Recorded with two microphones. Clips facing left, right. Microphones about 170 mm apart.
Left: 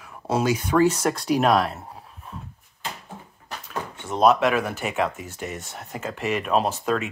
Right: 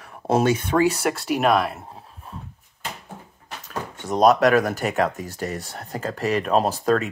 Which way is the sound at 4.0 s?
40° right (ahead or behind).